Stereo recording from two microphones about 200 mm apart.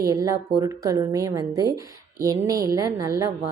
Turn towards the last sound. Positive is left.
turn(degrees=-15)  # may be behind; listen again after turning